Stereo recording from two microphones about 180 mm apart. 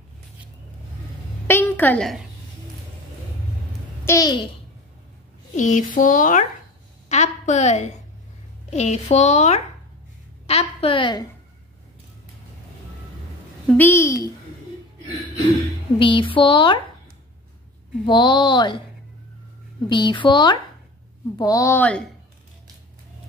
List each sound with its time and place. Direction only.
1.5 s a sound: 10° left (ahead or behind)
4.0 s a child's voice: 15° left (ahead or behind)
5.5 s a woman's voice: 45° left (ahead or behind); by 11.2 s 25° left (ahead or behind)
13.7 s a child's voice: 10° left (ahead or behind)
16.0 s a woman's voice: 30° left (ahead or behind)
18.0 s a woman's voice: 25° left (ahead or behind)
19.9 s a woman's voice: 25° left (ahead or behind); by 22.0 s 10° left (ahead or behind)